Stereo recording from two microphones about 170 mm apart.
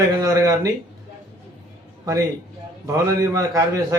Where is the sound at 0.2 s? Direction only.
20° right (ahead or behind).